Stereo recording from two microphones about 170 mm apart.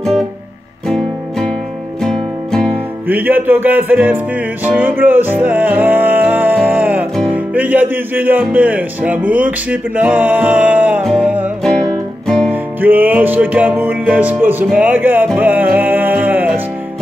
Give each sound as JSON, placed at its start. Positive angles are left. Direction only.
{"t": 0.8, "sound": "music", "side_deg": 0}
{"t": 3.1, "sound": "music", "side_deg": -10}
{"t": 7.2, "sound": "speech", "side_deg": -10}
{"t": 12.4, "sound": "music", "side_deg": -10}